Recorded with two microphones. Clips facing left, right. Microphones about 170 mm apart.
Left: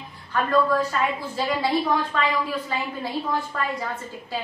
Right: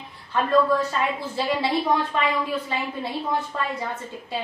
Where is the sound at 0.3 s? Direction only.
25° right (ahead or behind).